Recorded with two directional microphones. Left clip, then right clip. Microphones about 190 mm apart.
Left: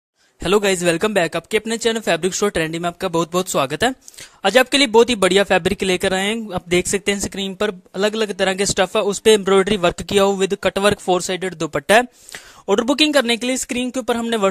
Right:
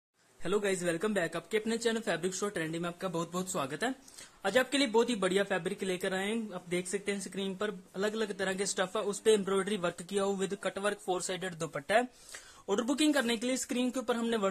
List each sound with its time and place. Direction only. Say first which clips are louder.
0.4 s speech: left 15 dB; 50° left (ahead or behind)